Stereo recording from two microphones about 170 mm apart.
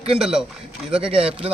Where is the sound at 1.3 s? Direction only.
35° right (ahead or behind).